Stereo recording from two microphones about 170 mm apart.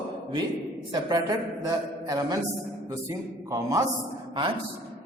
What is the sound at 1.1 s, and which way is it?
A man's voice, 20° right (ahead or behind).